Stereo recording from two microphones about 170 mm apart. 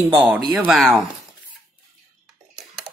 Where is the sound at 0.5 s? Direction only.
10° right (ahead or behind).